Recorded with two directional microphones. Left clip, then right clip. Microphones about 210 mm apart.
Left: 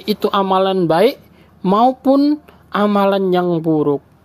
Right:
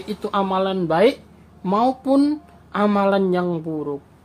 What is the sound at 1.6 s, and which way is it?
Speech, 35° left (ahead or behind).